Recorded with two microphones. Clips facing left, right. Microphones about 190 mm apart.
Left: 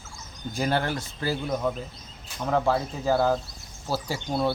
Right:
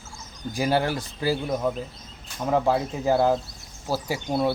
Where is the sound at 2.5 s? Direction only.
15° right (ahead or behind).